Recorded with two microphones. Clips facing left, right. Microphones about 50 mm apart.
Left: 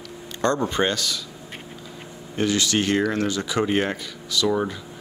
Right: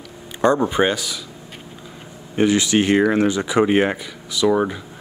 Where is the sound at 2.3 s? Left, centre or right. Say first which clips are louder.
Right 5 dB; right.